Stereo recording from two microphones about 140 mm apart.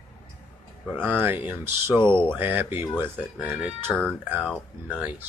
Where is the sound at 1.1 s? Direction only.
10° right (ahead or behind).